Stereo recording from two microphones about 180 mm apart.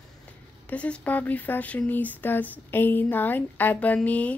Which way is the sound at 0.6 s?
5° left (ahead or behind).